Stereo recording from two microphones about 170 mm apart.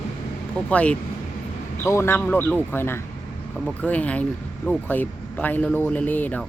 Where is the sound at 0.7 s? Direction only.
10° left (ahead or behind).